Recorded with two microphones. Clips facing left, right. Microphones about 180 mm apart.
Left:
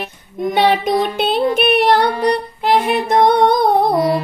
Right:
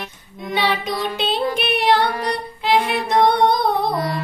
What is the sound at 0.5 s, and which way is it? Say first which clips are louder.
Child singing: left 7 dB; 50° left (ahead or behind).